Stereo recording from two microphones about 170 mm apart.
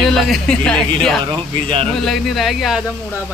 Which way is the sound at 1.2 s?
30° right (ahead or behind).